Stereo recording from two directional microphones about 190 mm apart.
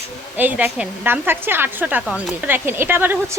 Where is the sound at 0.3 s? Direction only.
10° right (ahead or behind).